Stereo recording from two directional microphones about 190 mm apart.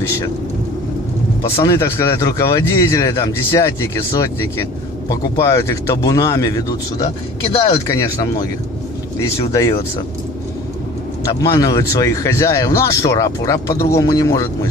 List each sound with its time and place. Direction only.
0.0 s speech: 15° left (ahead or behind)
1.6 s speech: 15° left (ahead or behind)
11.2 s speech: 20° left (ahead or behind)